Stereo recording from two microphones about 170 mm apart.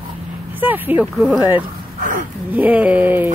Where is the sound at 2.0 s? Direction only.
50° right (ahead or behind).